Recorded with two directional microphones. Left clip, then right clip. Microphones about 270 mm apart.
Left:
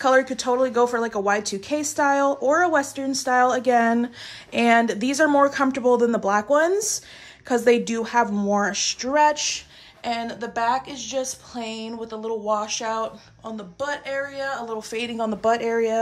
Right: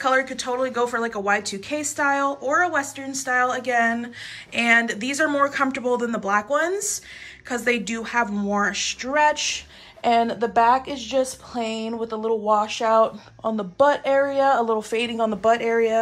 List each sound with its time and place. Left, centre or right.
0.0 s a woman's voice: centre